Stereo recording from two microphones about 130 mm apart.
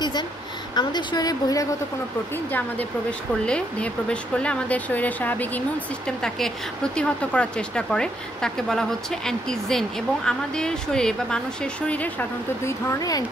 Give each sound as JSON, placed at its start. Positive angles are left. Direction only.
{"t": 0.7, "sound": "a woman's voice", "side_deg": 35}
{"t": 2.3, "sound": "speech", "side_deg": 15}